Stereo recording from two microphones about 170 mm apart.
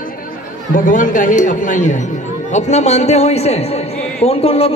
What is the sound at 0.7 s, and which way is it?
A man's voice, 50° left (ahead or behind).